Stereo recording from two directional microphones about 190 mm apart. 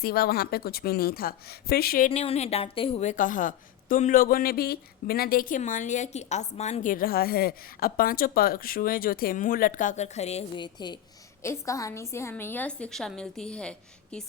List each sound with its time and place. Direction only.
0.0 s a woman's voice: 55° left (ahead or behind)
2.2 s a woman's voice: 35° left (ahead or behind); by 14.3 s 5° left (ahead or behind)